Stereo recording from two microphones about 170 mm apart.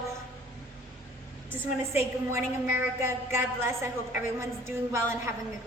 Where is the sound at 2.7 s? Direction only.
15° right (ahead or behind).